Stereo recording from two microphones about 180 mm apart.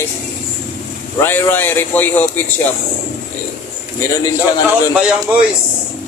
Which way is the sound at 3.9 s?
20° left (ahead or behind).